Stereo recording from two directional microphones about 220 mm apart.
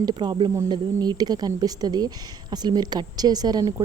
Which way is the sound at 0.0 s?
20° right (ahead or behind).